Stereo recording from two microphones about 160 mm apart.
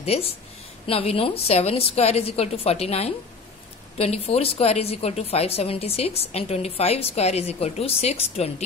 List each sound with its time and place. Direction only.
0.0 s a woman's voice: 40° left (ahead or behind)